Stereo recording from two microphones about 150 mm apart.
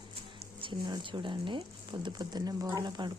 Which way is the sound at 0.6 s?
30° right (ahead or behind).